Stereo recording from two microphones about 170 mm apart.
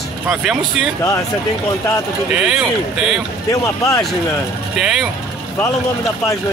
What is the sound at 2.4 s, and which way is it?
Speech, 5° right (ahead or behind).